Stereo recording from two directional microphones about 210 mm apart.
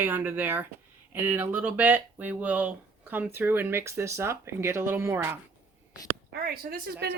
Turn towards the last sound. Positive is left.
turn(degrees=-50)  # may be behind; listen again after turning